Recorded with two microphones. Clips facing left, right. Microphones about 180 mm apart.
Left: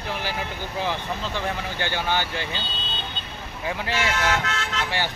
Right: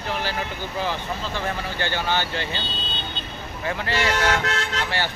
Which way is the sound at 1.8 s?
15° left (ahead or behind).